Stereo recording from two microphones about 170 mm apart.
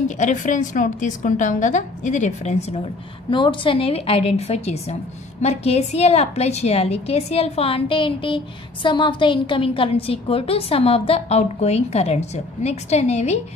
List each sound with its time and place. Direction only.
0.2 s a woman's voice: 50° left (ahead or behind)
3.3 s a woman's voice: 30° left (ahead or behind)